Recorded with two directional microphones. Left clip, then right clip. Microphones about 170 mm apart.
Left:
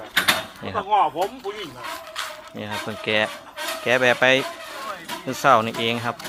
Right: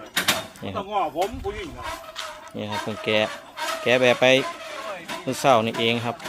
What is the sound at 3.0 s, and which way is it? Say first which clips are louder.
Speech: left 1 dB; 20° right (ahead or behind).